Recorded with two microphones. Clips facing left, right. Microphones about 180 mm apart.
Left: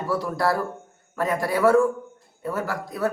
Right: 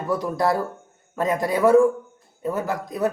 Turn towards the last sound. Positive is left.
turn(degrees=-20)  # may be behind; listen again after turning